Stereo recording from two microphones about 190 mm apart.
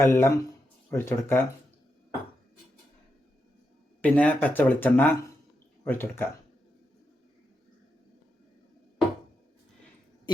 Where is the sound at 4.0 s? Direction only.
5° left (ahead or behind).